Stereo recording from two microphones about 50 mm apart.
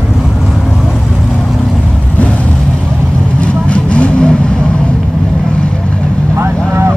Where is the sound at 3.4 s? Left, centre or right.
Left.